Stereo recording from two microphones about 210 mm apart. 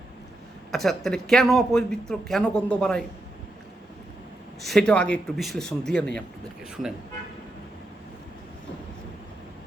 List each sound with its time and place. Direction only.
0.7 s speech: centre (ahead or behind)
4.6 s speech: centre (ahead or behind)